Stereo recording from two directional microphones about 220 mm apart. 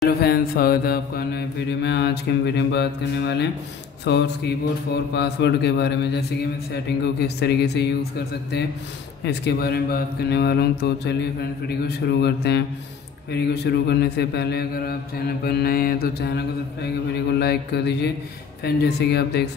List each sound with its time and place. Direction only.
0.2 s mantra: 45° left (ahead or behind)